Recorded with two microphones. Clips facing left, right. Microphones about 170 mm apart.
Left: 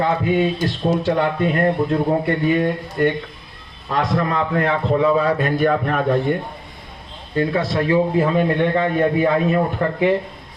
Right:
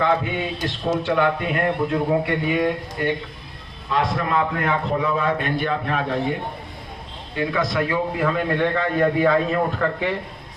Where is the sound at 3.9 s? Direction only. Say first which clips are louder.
Left 2 dB; 40° left (ahead or behind).